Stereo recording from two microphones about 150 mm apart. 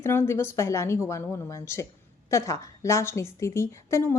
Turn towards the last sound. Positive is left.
turn(degrees=20)  # may be behind; listen again after turning